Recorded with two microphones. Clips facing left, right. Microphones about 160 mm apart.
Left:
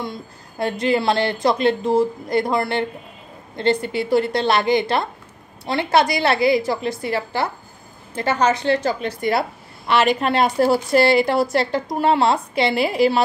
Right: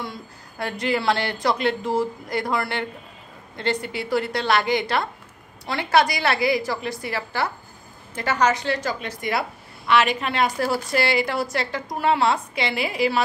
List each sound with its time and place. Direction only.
0.0 s a woman's voice: 25° left (ahead or behind)